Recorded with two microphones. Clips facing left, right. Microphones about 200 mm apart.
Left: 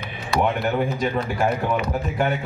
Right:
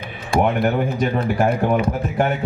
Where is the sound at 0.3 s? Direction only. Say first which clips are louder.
Right 4 dB; 50° right (ahead or behind).